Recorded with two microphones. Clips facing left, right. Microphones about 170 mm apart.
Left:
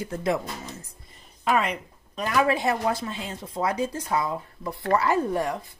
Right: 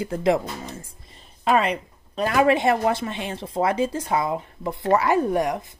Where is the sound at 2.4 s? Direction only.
25° right (ahead or behind).